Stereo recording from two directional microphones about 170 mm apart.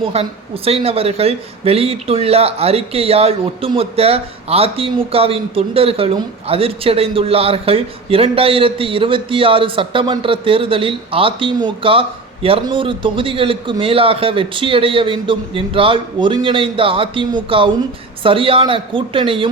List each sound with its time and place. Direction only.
0.0 s speech: 35° right (ahead or behind)